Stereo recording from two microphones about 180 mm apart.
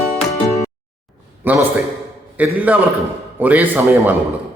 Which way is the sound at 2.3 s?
10° right (ahead or behind).